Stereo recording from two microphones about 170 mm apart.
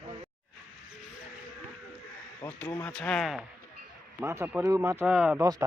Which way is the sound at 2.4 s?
10° left (ahead or behind).